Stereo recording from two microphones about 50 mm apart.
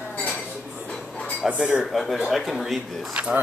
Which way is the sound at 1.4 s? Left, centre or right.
Right.